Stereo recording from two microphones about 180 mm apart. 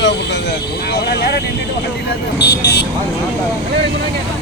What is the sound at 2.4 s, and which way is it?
Speech, 70° left (ahead or behind).